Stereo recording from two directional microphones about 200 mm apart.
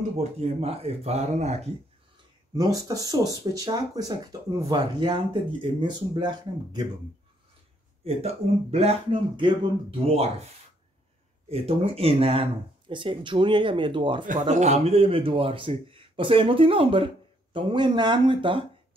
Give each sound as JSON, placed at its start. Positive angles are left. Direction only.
{"t": 0.2, "sound": "speech", "side_deg": -30}
{"t": 2.5, "sound": "speech", "side_deg": -20}
{"t": 8.0, "sound": "speech", "side_deg": -30}
{"t": 11.4, "sound": "speech", "side_deg": -30}
{"t": 14.5, "sound": "speech", "side_deg": -35}